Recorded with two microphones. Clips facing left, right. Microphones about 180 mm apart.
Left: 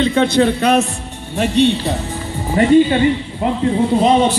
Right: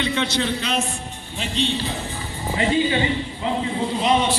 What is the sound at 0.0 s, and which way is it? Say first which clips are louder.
Speech: left 10 dB; 45° left (ahead or behind).